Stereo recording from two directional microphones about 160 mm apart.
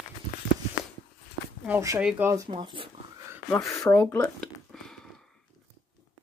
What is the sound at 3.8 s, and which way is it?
Speech, 15° left (ahead or behind).